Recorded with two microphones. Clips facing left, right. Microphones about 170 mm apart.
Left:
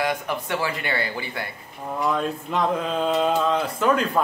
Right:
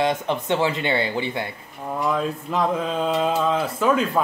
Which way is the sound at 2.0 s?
Centre (ahead or behind).